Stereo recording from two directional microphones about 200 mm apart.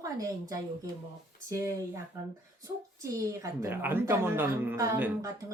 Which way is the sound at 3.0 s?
15° right (ahead or behind).